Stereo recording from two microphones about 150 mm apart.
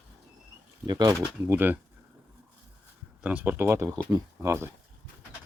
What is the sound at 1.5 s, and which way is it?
Speech, 15° right (ahead or behind).